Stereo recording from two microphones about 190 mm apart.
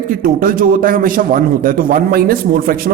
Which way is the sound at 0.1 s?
45° right (ahead or behind).